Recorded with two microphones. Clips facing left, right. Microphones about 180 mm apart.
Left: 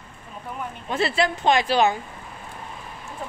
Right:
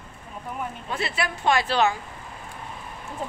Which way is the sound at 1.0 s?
35° left (ahead or behind).